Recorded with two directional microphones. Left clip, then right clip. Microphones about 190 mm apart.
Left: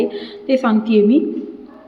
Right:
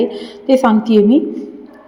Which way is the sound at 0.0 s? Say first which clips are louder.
Right 3 dB; 25° right (ahead or behind).